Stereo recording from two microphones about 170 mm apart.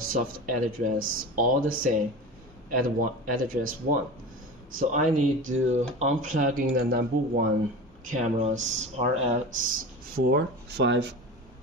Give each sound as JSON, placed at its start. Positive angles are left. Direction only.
{"t": 0.0, "sound": "speech", "side_deg": -55}
{"t": 3.0, "sound": "speech", "side_deg": -55}
{"t": 8.0, "sound": "speech", "side_deg": -50}